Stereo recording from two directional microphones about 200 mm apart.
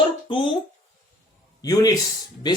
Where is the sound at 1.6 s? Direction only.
20° left (ahead or behind).